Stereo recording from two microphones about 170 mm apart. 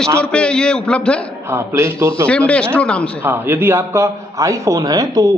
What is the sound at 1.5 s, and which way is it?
Speech, 15° right (ahead or behind).